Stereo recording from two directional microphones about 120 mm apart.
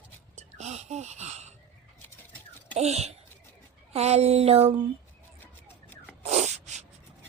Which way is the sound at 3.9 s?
60° right (ahead or behind).